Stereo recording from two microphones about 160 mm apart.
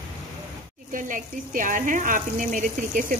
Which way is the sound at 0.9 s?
55° right (ahead or behind).